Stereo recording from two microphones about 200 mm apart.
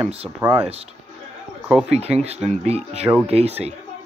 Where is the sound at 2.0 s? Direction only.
30° right (ahead or behind).